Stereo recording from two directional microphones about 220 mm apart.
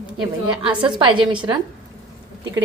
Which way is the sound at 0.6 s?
20° right (ahead or behind).